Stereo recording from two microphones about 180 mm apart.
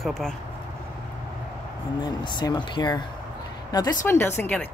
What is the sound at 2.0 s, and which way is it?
Speech, 25° left (ahead or behind).